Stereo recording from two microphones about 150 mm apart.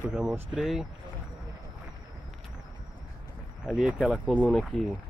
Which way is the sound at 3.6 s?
5° right (ahead or behind).